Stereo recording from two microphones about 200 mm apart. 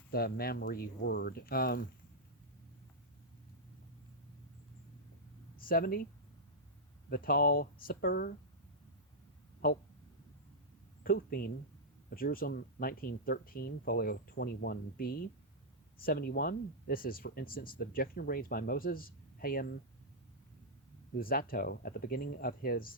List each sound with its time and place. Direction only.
0.1 s speech: 50° left (ahead or behind)
5.5 s speech: 45° left (ahead or behind)
7.1 s speech: 45° left (ahead or behind)
11.0 s speech: 50° left (ahead or behind)
21.2 s speech: 45° left (ahead or behind)